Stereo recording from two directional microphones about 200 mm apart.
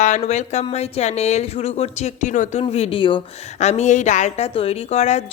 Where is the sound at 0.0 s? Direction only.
35° left (ahead or behind).